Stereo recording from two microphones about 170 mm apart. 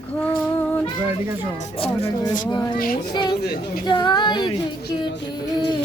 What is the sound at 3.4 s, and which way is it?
Speech, 60° left (ahead or behind).